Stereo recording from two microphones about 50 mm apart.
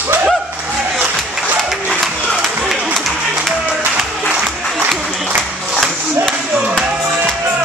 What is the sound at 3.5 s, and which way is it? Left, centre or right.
Music, centre.